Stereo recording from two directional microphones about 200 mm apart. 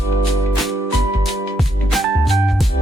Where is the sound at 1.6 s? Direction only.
Centre (ahead or behind).